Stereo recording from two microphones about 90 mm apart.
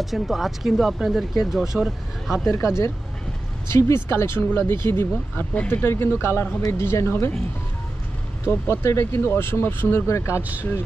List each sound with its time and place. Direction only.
0.0 s speech: centre (ahead or behind)
2.4 s speech: 30° left (ahead or behind)
8.5 s speech: 30° left (ahead or behind)